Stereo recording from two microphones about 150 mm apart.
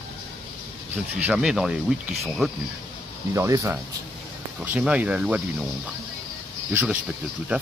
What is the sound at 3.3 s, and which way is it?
Speech, 20° right (ahead or behind).